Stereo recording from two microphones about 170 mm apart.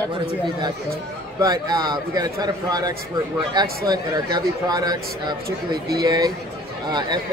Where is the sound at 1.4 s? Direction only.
20° right (ahead or behind).